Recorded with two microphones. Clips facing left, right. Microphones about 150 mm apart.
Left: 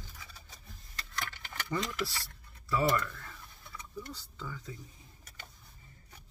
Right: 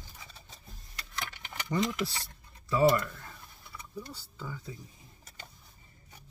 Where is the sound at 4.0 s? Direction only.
10° right (ahead or behind).